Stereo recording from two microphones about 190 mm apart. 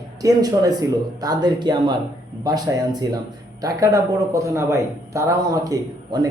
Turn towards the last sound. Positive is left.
turn(degrees=-20)  # may be behind; listen again after turning